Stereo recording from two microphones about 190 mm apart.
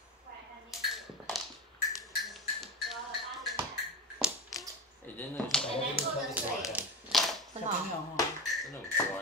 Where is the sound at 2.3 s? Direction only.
Centre (ahead or behind).